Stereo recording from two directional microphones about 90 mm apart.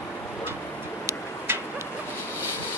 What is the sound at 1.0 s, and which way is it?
Tick-tock, 30° right (ahead or behind).